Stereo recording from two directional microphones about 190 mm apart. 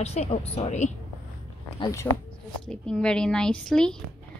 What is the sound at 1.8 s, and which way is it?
Speech, 15° left (ahead or behind).